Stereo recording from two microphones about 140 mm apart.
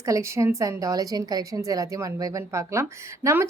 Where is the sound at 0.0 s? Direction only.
20° right (ahead or behind).